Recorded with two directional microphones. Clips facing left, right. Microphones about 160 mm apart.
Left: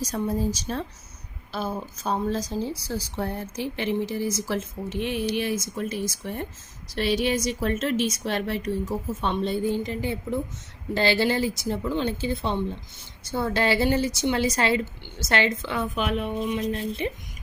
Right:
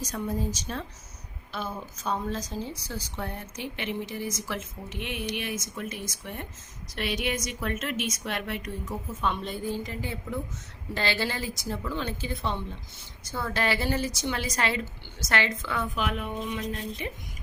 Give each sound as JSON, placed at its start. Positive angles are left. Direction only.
{"t": 0.0, "sound": "a woman's voice", "side_deg": 35}